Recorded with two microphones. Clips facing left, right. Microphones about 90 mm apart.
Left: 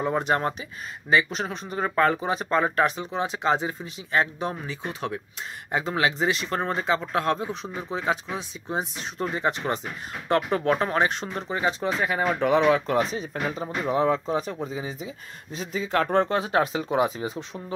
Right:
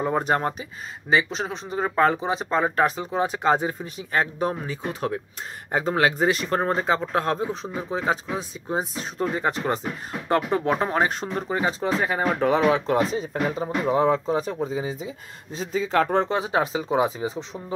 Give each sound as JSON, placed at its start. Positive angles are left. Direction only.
{"t": 0.0, "sound": "speech", "side_deg": -35}
{"t": 11.1, "sound": "speech", "side_deg": -40}
{"t": 16.2, "sound": "speech", "side_deg": -20}